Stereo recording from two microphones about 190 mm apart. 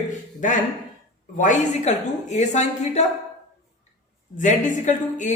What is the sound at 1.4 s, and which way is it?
Speech, 40° left (ahead or behind).